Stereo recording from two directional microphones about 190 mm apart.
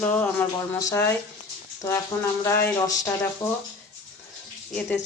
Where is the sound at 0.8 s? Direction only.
15° left (ahead or behind).